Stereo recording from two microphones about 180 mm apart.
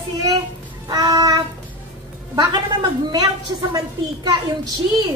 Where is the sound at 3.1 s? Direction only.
25° right (ahead or behind).